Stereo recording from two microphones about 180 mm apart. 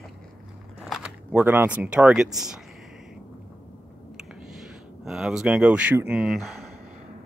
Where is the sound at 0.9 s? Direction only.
5° right (ahead or behind).